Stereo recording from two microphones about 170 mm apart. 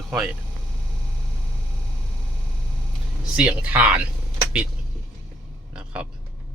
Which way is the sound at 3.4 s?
10° right (ahead or behind).